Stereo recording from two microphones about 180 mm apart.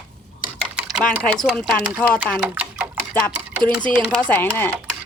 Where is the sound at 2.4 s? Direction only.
5° right (ahead or behind).